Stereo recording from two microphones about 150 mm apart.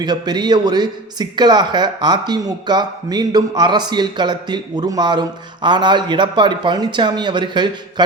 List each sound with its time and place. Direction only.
0.0 s a man's voice: 30° right (ahead or behind)